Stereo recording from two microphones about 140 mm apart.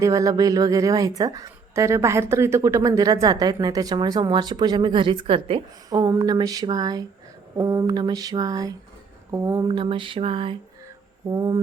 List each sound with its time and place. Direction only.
0.0 s a woman's voice: 25° right (ahead or behind); by 5.6 s 40° right (ahead or behind)
5.9 s a woman's voice: 25° right (ahead or behind)
9.6 s a sound: 35° right (ahead or behind)
11.3 s a woman's voice: 30° right (ahead or behind)